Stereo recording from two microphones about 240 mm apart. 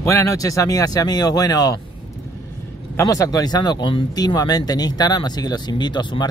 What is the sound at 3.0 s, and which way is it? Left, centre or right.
Speech, centre.